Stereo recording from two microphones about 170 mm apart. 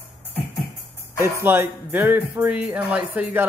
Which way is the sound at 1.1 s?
15° right (ahead or behind).